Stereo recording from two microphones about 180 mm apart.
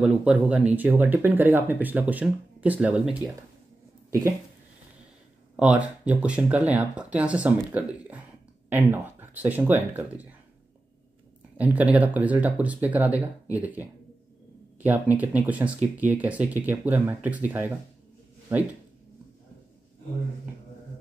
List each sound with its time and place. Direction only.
0.0 s speech: 5° right (ahead or behind)
5.6 s speech: 5° right (ahead or behind)
11.5 s speech: 10° right (ahead or behind)